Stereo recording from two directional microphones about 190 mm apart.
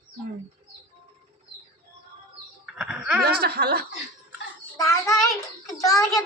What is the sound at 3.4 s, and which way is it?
Speech, 55° right (ahead or behind).